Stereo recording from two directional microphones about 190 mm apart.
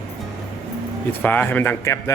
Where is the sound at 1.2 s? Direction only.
10° left (ahead or behind).